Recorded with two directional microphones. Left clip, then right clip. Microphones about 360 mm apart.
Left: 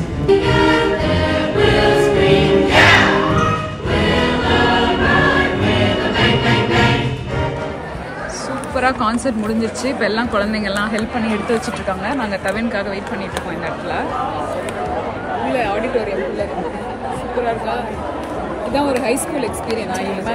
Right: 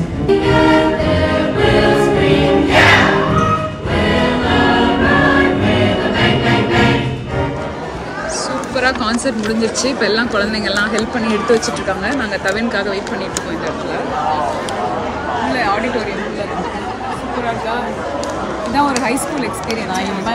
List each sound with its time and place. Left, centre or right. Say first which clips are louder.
0.3 s music: right 2 dB; centre
8.7 s speech: even; centre